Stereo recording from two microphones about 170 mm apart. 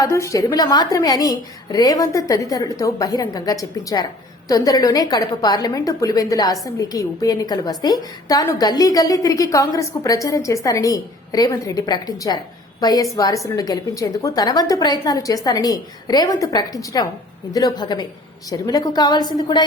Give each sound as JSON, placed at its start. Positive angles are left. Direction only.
{"t": 0.0, "sound": "a woman's voice", "side_deg": 15}